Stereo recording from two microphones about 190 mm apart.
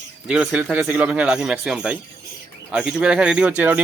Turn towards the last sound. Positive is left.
turn(degrees=-10)  # may be behind; listen again after turning